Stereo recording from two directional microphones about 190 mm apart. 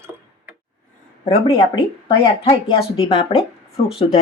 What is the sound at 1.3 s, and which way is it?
Speech, 30° left (ahead or behind).